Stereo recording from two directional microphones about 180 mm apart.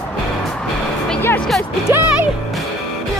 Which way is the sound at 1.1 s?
10° left (ahead or behind).